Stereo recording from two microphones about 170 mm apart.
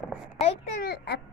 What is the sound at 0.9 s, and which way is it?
Baby cry, 75° left (ahead or behind).